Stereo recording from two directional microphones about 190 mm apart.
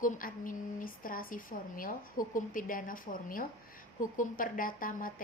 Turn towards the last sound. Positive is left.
turn(degrees=45)  # may be behind; listen again after turning